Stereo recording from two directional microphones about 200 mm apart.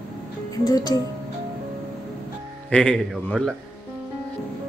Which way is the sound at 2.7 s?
5° left (ahead or behind).